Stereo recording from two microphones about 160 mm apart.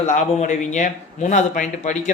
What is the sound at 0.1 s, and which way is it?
Speech, 50° left (ahead or behind).